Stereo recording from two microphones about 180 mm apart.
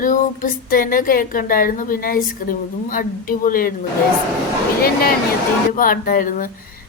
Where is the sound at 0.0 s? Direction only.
50° left (ahead or behind).